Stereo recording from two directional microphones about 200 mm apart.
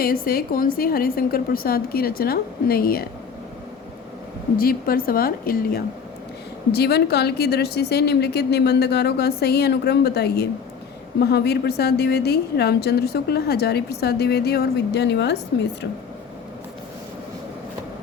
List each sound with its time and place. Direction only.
0.0 s a woman's voice: 45° left (ahead or behind)
4.5 s a woman's voice: 45° left (ahead or behind)